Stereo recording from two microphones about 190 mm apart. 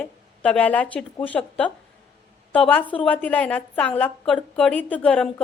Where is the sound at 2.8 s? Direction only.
25° left (ahead or behind).